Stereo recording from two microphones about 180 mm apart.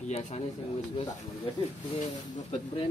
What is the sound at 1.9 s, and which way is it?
Speech, 35° left (ahead or behind).